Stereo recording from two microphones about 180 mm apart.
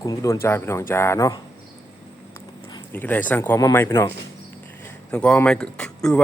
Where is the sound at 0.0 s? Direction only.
20° left (ahead or behind).